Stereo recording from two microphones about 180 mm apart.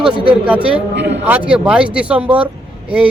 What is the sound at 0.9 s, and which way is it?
Speech, 70° right (ahead or behind).